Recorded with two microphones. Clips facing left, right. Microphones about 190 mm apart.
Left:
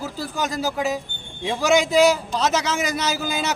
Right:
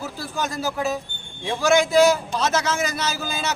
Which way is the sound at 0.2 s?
15° left (ahead or behind).